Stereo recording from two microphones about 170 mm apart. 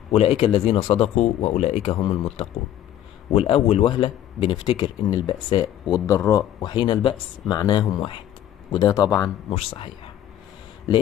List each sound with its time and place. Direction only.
0.1 s speech: 35° left (ahead or behind)
1.9 s speech: 25° left (ahead or behind)
3.3 s speech: 35° left (ahead or behind); by 9.3 s 20° left (ahead or behind)